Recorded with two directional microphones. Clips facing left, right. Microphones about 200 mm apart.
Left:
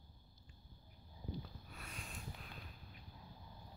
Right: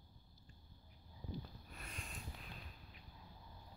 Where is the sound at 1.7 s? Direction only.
Centre (ahead or behind).